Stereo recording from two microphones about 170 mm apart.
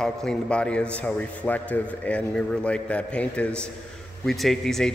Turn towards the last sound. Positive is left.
turn(degrees=0)  # may be behind; listen again after turning